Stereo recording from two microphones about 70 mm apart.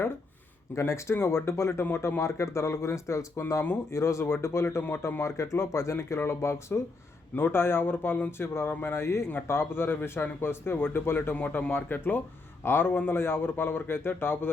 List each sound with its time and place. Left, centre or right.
0.8 s speech: left
5.9 s speech: left
8.4 s speech: left